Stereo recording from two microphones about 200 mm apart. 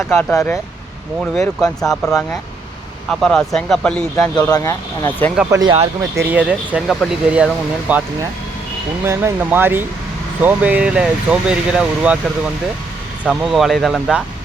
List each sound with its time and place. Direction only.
0.0 s speech: 10° left (ahead or behind)
4.4 s speech: 15° left (ahead or behind)
5.5 s speech: 15° right (ahead or behind)
9.0 s speech: 10° right (ahead or behind)
13.2 s speech: centre (ahead or behind)